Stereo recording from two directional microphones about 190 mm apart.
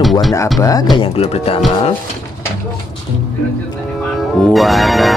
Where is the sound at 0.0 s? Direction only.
Centre (ahead or behind).